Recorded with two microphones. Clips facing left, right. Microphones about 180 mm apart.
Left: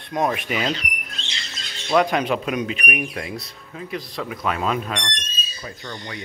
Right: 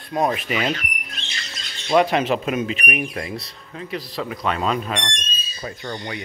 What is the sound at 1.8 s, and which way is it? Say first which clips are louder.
Speech: right 1 dB; 5° right (ahead or behind).